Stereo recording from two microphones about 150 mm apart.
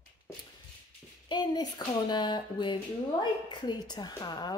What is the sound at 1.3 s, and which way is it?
A woman's voice, 30° left (ahead or behind).